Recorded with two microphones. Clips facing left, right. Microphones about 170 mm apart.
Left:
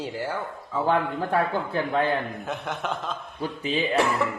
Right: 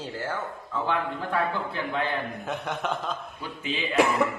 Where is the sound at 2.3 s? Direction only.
Centre (ahead or behind).